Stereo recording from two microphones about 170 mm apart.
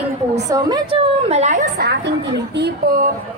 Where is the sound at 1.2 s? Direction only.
40° right (ahead or behind).